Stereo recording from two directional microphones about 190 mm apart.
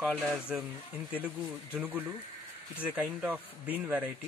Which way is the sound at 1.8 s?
10° right (ahead or behind).